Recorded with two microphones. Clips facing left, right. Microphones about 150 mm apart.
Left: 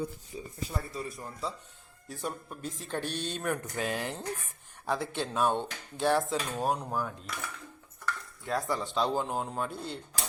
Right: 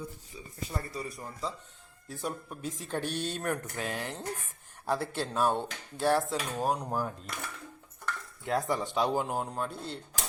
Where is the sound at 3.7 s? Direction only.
15° left (ahead or behind).